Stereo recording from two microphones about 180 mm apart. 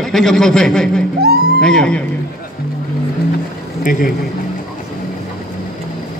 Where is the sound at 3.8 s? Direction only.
50° left (ahead or behind).